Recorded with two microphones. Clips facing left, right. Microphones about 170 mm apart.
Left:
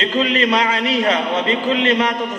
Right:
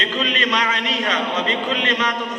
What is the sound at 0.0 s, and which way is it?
A man's voice, 30° left (ahead or behind).